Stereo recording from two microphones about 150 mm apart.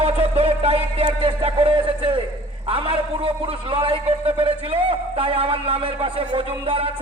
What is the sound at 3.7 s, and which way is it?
A man's voice, 35° right (ahead or behind).